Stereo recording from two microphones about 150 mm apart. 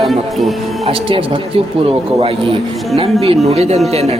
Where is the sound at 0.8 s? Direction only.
40° right (ahead or behind).